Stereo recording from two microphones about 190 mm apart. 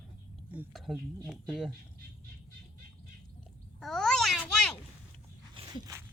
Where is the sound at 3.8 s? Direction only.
5° left (ahead or behind).